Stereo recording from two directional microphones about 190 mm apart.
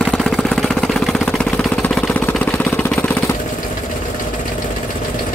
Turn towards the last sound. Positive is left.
turn(degrees=10)  # may be behind; listen again after turning